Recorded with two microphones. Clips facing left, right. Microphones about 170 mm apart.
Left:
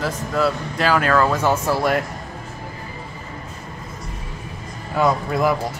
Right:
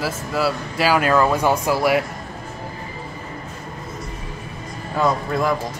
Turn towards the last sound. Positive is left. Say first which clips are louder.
# left 1 dB
turn(degrees=5)  # may be behind; listen again after turning